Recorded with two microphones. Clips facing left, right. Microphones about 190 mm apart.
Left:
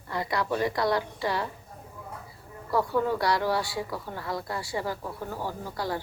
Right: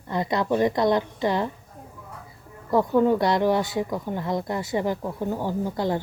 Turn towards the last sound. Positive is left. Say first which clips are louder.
# right 7 dB
turn(degrees=-20)  # may be behind; listen again after turning